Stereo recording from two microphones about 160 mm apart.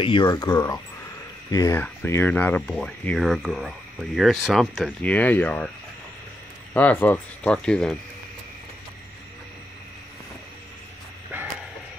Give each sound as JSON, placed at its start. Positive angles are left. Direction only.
{"t": 0.0, "sound": "speech", "side_deg": 30}
{"t": 6.7, "sound": "speech", "side_deg": 10}